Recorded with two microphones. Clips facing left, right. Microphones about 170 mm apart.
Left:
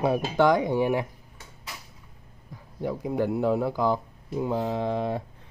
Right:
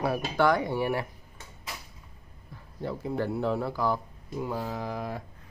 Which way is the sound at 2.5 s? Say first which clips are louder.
Left 4 dB; 15° left (ahead or behind).